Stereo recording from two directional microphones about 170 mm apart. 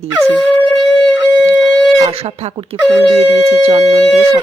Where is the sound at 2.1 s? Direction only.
35° right (ahead or behind).